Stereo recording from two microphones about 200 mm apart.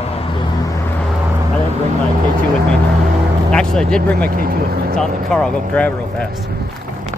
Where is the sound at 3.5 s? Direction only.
5° left (ahead or behind).